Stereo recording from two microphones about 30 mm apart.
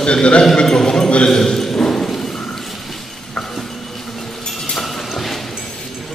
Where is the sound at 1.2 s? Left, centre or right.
Centre.